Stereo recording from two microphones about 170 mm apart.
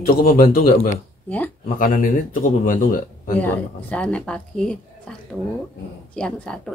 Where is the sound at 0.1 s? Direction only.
60° left (ahead or behind).